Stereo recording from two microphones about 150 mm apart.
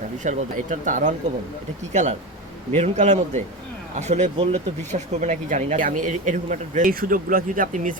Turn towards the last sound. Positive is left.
turn(degrees=-60)  # may be behind; listen again after turning